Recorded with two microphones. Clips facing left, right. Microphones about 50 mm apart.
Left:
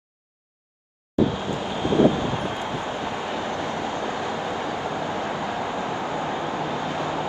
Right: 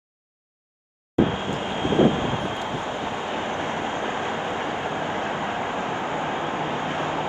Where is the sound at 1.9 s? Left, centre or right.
Right.